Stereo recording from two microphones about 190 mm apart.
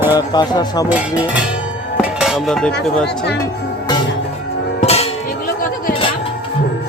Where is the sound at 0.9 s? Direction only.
5° right (ahead or behind).